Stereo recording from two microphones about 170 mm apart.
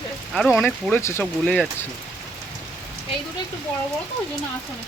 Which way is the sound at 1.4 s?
5° left (ahead or behind).